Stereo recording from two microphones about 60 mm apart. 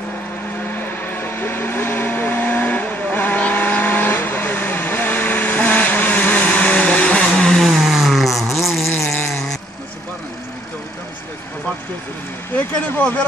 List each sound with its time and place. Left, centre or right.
0.7 s vehicle: left; by 7.6 s centre
7.6 s a sound: centre
9.3 s vehicle: centre
12.5 s vehicle: left